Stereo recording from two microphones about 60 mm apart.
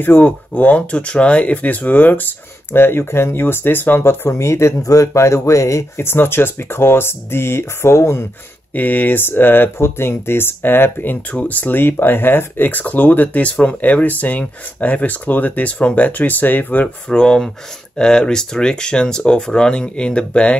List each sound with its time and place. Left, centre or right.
0.0 s speech: left
2.7 s speech: left
4.3 s speech: left
4.8 s speech: left
6.0 s speech: left
8.7 s speech: left
11.3 s speech: left
16.8 s speech: centre